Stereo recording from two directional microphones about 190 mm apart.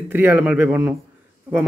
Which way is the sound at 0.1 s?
10° right (ahead or behind).